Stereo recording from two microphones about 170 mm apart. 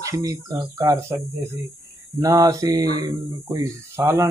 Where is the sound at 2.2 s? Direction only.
20° right (ahead or behind).